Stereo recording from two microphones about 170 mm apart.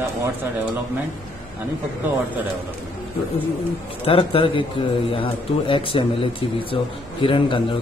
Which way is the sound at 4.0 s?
35° left (ahead or behind).